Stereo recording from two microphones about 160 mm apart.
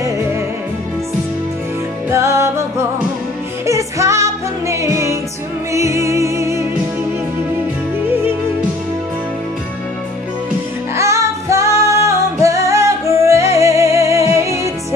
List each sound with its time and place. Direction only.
2.0 s music: 15° right (ahead or behind)
3.6 s music: 20° right (ahead or behind)
11.0 s music: 20° right (ahead or behind)